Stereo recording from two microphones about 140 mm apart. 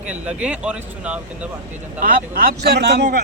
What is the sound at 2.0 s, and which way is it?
Speech, 90° right.